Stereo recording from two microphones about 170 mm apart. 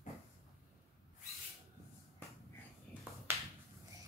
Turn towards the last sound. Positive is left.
turn(degrees=-15)  # may be behind; listen again after turning